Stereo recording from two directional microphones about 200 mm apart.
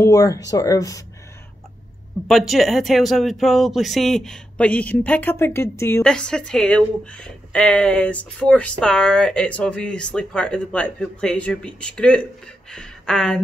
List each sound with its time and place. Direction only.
0.0 s speech: 15° left (ahead or behind)
2.2 s speech: centre (ahead or behind)